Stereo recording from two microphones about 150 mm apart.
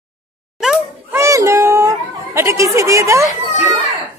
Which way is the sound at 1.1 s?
20° right (ahead or behind).